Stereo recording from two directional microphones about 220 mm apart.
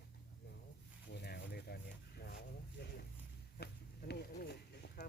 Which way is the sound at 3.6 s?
45° left (ahead or behind).